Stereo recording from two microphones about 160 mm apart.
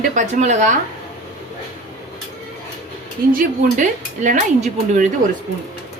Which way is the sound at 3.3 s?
55° right (ahead or behind).